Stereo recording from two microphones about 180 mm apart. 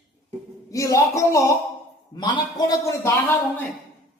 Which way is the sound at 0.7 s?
15° left (ahead or behind).